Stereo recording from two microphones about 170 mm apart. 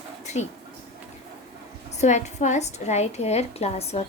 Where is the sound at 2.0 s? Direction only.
45° left (ahead or behind).